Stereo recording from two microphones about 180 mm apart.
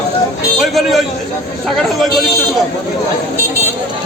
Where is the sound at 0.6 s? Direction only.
Centre (ahead or behind).